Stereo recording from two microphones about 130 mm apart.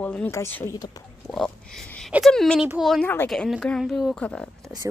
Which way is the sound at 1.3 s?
5° left (ahead or behind).